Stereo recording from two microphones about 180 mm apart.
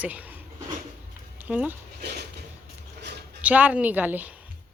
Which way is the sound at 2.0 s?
65° right (ahead or behind).